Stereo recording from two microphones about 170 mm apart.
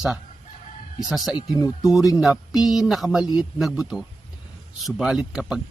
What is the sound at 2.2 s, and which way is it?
Speech, centre (ahead or behind).